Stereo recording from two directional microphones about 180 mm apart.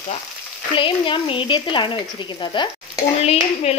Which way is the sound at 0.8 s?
30° left (ahead or behind).